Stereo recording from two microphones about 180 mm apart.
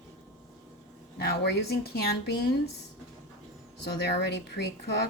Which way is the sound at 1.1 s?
65° left (ahead or behind).